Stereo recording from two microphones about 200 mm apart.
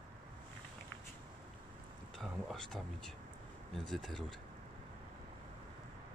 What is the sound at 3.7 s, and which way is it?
Speech, centre (ahead or behind).